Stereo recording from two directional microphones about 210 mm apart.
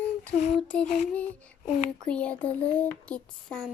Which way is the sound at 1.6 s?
35° left (ahead or behind).